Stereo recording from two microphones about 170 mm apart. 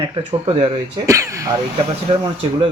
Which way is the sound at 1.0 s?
20° right (ahead or behind).